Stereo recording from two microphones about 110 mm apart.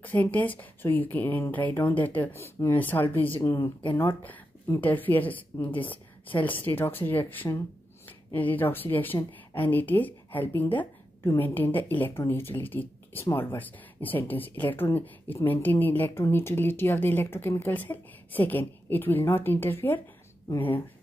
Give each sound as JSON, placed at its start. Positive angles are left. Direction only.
{"t": 0.0, "sound": "speech", "side_deg": 15}